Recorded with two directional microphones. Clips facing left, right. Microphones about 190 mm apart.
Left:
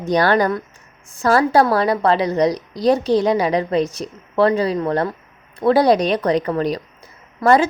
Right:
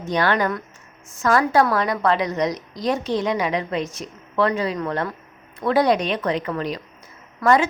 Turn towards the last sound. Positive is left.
turn(degrees=35)  # may be behind; listen again after turning